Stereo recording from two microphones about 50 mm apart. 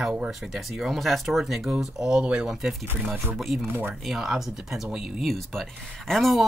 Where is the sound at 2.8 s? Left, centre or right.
Right.